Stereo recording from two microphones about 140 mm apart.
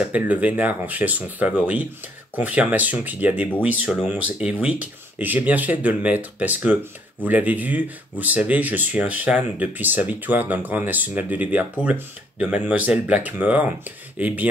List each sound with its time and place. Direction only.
0.0 s speech: 10° right (ahead or behind)